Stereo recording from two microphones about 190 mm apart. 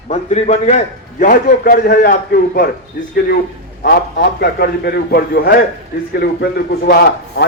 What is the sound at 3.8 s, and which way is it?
A man's voice, 55° left (ahead or behind).